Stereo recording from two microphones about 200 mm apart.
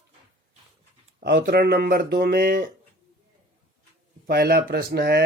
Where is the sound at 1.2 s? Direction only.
50° right (ahead or behind).